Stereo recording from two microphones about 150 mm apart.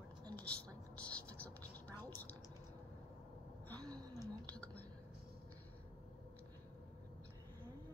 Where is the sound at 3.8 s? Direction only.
25° right (ahead or behind).